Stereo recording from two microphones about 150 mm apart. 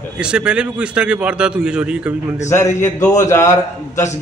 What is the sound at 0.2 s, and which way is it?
A man's voice, 5° right (ahead or behind).